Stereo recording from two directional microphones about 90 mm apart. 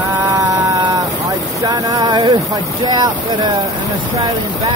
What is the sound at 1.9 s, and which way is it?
Speech, 45° right (ahead or behind).